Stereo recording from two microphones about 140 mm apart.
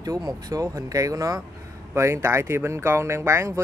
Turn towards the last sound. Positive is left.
turn(degrees=-20)  # may be behind; listen again after turning